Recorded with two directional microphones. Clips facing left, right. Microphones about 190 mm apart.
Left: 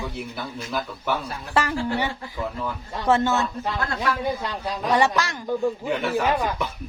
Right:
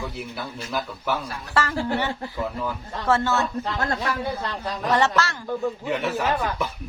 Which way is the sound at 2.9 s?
20° left (ahead or behind).